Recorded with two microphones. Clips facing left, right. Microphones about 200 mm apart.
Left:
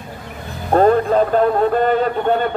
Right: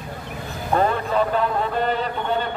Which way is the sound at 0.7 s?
40° left (ahead or behind).